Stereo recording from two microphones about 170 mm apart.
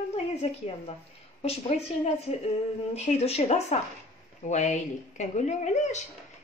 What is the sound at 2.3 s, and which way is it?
Speech, 35° left (ahead or behind).